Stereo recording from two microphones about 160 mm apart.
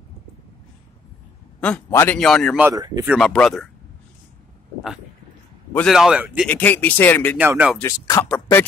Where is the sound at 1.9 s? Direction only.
15° left (ahead or behind).